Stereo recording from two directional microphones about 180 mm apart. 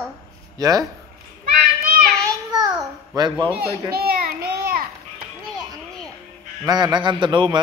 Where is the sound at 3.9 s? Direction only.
60° right (ahead or behind).